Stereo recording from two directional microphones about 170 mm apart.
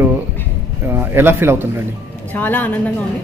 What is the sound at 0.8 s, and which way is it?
Speech, 15° right (ahead or behind).